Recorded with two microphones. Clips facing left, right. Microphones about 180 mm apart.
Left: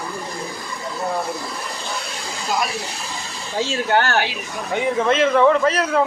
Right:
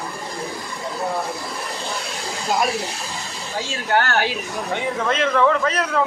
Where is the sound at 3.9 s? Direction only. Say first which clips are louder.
Even; 30° left (ahead or behind).